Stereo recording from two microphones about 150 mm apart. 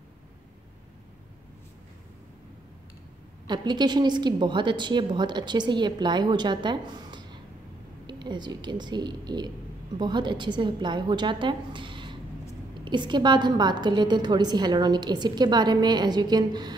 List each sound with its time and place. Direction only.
3.4 s a woman's voice: 30° right (ahead or behind)